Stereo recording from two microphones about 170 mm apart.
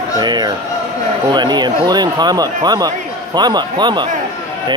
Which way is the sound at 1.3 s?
25° right (ahead or behind).